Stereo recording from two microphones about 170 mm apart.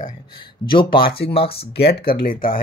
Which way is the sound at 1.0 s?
70° left (ahead or behind).